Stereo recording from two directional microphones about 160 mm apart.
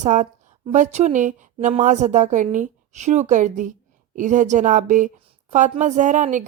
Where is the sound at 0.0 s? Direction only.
50° right (ahead or behind).